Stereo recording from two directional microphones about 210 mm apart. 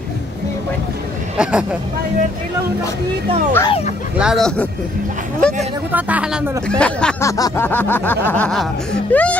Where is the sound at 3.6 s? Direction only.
30° left (ahead or behind).